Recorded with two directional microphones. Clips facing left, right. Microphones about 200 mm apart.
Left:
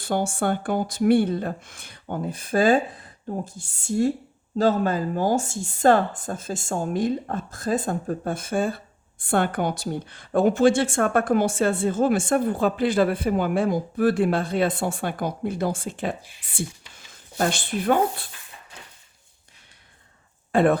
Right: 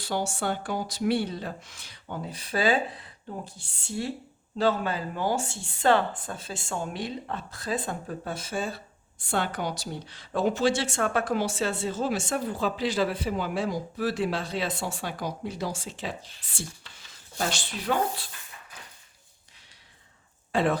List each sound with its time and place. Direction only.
0.0 s speech: 55° left (ahead or behind)
20.5 s speech: 55° left (ahead or behind)